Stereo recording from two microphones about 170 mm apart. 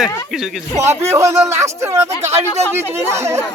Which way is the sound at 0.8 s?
15° right (ahead or behind).